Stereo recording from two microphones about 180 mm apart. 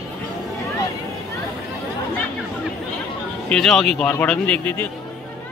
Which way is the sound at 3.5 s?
Centre (ahead or behind).